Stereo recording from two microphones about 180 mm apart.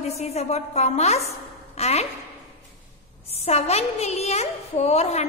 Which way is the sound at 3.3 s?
35° left (ahead or behind).